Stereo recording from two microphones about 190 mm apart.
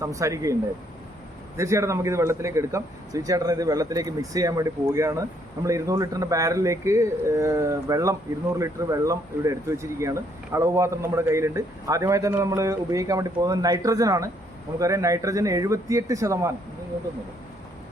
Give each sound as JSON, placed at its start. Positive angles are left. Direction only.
{"t": 0.0, "sound": "speech", "side_deg": -15}
{"t": 1.5, "sound": "speech", "side_deg": -15}